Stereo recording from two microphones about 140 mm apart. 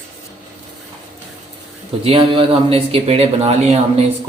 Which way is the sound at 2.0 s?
45° right (ahead or behind).